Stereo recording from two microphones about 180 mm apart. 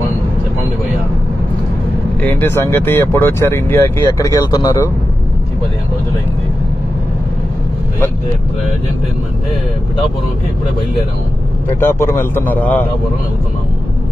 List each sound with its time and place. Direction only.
2.2 s speech: 10° left (ahead or behind)
11.8 s speech: 15° left (ahead or behind)